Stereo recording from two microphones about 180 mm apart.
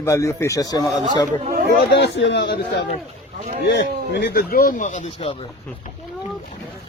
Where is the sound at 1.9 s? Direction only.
75° left (ahead or behind); by 5.3 s 45° left (ahead or behind).